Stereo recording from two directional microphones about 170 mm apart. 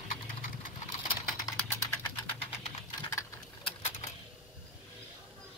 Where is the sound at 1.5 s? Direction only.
20° left (ahead or behind).